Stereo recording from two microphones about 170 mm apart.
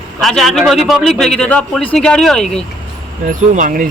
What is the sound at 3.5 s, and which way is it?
Speech, 55° right (ahead or behind).